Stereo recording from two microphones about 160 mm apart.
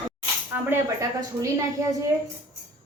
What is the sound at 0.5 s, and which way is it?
A woman's voice, 15° right (ahead or behind).